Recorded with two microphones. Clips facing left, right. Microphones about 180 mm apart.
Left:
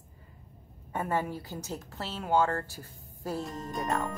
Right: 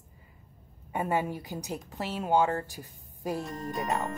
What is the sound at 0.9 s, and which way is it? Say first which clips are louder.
A woman's voice: right 2 dB; 15° right (ahead or behind).